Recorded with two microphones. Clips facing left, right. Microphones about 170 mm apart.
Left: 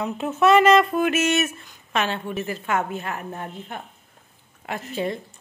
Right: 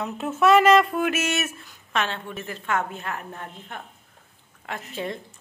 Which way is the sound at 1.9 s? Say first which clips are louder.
Left 3 dB; 10° left (ahead or behind).